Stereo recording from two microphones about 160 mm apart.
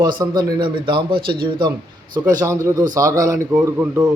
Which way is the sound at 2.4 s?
20° right (ahead or behind).